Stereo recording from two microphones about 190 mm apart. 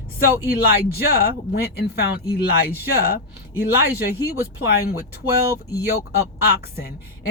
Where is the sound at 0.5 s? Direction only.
55° left (ahead or behind).